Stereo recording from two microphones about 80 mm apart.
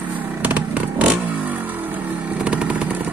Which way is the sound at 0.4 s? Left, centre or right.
Centre.